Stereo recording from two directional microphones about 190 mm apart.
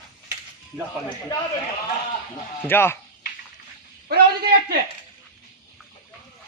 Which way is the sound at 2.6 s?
10° left (ahead or behind).